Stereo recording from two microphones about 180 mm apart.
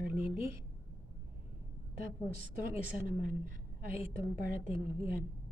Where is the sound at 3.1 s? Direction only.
50° right (ahead or behind).